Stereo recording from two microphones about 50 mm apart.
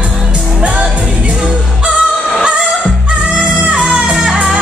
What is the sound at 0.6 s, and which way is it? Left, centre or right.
Music, right.